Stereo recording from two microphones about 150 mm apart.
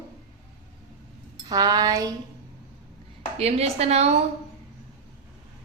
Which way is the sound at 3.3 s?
40° right (ahead or behind).